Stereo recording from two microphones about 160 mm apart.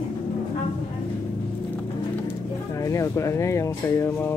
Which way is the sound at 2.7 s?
20° left (ahead or behind).